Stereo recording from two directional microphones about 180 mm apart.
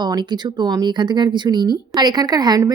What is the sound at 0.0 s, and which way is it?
A woman's voice, 25° right (ahead or behind).